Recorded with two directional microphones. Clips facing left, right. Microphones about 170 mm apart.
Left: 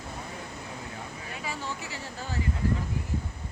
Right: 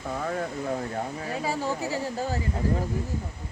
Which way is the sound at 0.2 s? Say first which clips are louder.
Right 11 dB; 75° right (ahead or behind).